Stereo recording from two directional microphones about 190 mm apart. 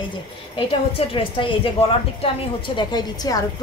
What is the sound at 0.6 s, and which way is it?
A woman's voice, 30° left (ahead or behind).